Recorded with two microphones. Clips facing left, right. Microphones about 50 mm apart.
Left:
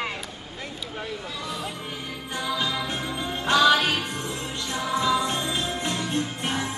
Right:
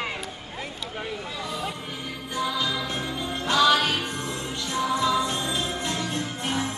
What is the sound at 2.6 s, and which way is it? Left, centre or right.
Music, left.